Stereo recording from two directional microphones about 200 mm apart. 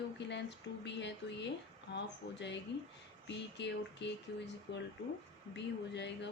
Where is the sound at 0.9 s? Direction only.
60° left (ahead or behind).